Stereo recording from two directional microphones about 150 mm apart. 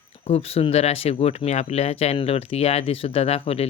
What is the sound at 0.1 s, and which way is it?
Speech, 40° left (ahead or behind).